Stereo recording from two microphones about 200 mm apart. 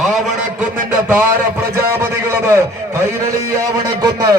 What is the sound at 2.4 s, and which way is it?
A man's voice, 15° right (ahead or behind).